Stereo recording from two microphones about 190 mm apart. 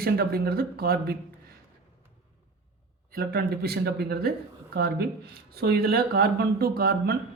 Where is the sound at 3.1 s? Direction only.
50° right (ahead or behind).